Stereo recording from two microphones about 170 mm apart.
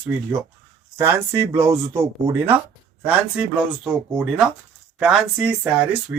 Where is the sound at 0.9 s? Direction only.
15° right (ahead or behind).